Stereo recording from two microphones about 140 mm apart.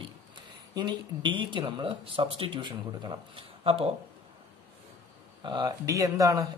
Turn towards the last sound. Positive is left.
turn(degrees=-25)  # may be behind; listen again after turning